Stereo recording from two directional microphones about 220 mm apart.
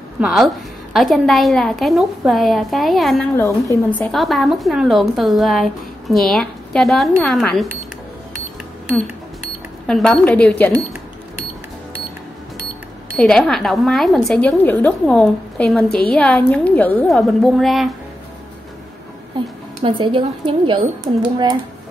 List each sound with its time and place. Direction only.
0.2 s a woman's voice: centre (ahead or behind)
3.3 s a woman's voice: 15° left (ahead or behind)
9.8 s a woman's voice: centre (ahead or behind)
13.1 s a woman's voice: centre (ahead or behind)
19.8 s speech: 20° right (ahead or behind)